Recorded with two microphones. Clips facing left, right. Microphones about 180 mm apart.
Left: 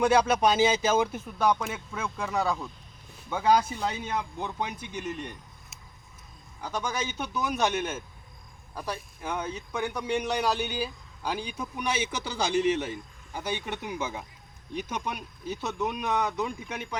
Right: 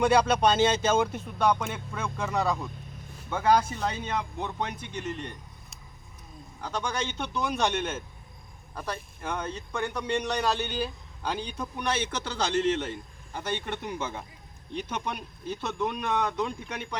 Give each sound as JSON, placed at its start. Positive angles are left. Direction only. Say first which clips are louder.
{"t": 0.0, "sound": "speech", "louder": "even", "side_deg": 5}
{"t": 6.6, "sound": "speech", "louder": "even", "side_deg": 10}